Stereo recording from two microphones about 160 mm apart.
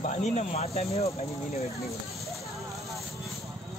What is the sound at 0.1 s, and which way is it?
Speech, 40° left (ahead or behind).